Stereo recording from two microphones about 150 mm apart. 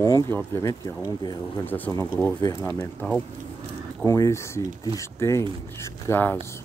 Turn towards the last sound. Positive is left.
turn(degrees=15)  # may be behind; listen again after turning